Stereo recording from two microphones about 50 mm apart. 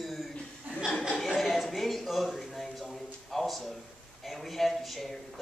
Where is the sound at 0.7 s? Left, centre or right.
Right.